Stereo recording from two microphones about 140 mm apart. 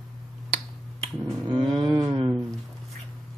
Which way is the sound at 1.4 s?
35° right (ahead or behind).